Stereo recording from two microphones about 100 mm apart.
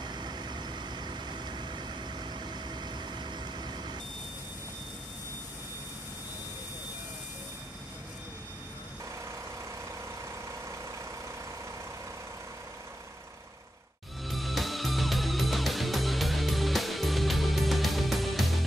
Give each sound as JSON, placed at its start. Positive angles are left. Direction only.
{"t": 0.0, "sound": "vehicle", "side_deg": -45}
{"t": 14.2, "sound": "music", "side_deg": 0}